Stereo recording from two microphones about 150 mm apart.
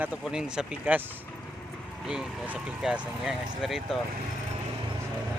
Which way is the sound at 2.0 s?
5° right (ahead or behind).